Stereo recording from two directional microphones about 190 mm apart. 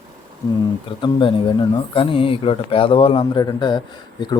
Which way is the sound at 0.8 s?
25° left (ahead or behind).